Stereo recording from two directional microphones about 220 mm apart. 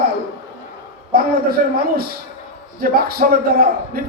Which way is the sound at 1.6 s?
40° right (ahead or behind).